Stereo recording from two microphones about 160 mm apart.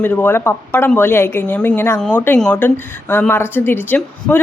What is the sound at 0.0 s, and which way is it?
A woman's voice, 15° left (ahead or behind).